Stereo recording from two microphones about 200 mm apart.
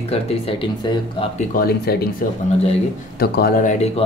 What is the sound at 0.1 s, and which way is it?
Speech, 30° left (ahead or behind).